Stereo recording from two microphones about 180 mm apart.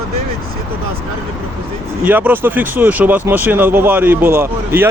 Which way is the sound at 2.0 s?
10° right (ahead or behind).